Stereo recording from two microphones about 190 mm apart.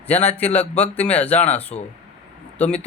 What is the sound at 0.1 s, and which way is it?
Speech, 10° left (ahead or behind).